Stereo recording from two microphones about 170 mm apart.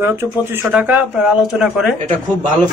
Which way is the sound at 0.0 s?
10° right (ahead or behind).